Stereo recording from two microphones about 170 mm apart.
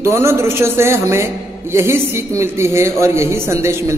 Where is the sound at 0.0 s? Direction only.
15° right (ahead or behind).